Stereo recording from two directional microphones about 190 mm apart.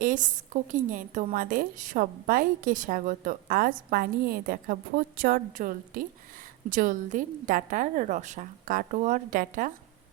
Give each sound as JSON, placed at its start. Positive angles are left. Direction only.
{"t": 0.0, "sound": "a woman's voice", "side_deg": -45}